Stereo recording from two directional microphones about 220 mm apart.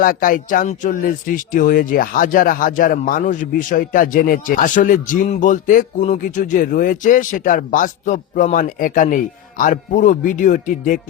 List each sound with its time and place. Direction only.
0.0 s speech: 40° left (ahead or behind)